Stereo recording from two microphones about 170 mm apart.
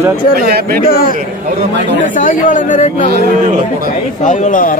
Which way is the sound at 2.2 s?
50° left (ahead or behind).